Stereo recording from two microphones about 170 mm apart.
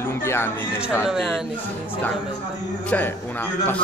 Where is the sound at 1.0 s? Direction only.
Centre (ahead or behind).